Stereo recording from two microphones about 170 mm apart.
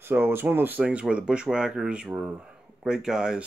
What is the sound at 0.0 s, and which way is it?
Speech, 15° right (ahead or behind).